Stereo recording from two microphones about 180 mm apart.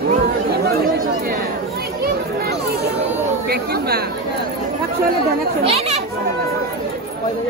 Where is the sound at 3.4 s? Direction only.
60° right (ahead or behind).